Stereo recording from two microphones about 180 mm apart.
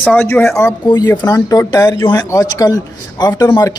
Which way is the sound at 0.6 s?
20° left (ahead or behind).